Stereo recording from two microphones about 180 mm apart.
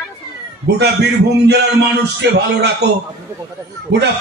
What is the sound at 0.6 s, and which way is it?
A man's voice, 65° right (ahead or behind).